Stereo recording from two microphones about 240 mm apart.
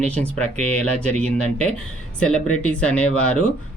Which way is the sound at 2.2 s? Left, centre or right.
Centre.